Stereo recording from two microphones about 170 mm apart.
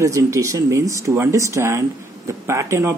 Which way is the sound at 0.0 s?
20° right (ahead or behind).